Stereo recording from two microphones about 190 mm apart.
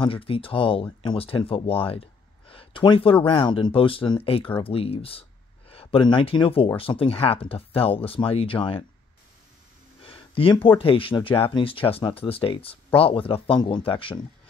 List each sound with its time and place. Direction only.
0.0 s speech: 30° left (ahead or behind)
10.0 s a sound: 30° left (ahead or behind)
10.8 s speech: 30° left (ahead or behind)